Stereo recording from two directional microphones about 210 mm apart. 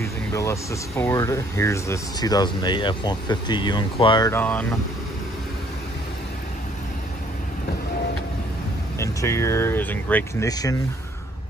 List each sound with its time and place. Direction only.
0.0 s speech: 15° left (ahead or behind)
4.3 s speech: 10° left (ahead or behind)
8.9 s speech: 15° left (ahead or behind)